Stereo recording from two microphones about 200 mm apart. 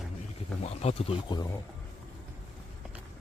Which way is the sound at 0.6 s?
30° left (ahead or behind).